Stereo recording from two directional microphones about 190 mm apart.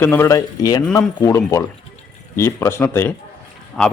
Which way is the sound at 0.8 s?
10° left (ahead or behind).